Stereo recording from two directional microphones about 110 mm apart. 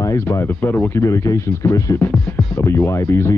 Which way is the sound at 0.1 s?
20° left (ahead or behind).